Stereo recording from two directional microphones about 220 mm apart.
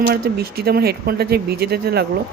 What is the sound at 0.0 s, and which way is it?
Speech, 45° right (ahead or behind).